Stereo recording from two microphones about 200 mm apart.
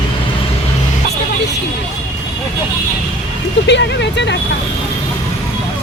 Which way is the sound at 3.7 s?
60° left (ahead or behind).